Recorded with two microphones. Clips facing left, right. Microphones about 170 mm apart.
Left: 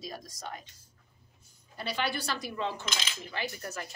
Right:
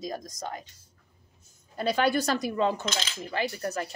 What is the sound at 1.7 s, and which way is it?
A woman's voice, 50° right (ahead or behind).